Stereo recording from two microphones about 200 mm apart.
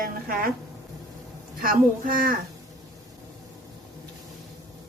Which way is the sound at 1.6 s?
45° right (ahead or behind).